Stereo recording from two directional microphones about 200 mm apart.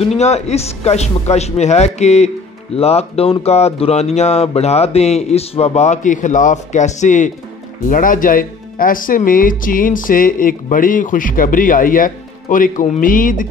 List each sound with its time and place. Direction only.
0.2 s speech: 30° left (ahead or behind)